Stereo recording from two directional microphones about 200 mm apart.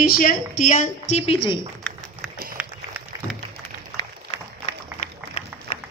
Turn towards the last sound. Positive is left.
turn(degrees=35)  # may be behind; listen again after turning